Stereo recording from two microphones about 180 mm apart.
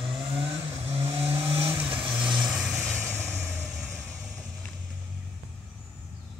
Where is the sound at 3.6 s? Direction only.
Centre (ahead or behind).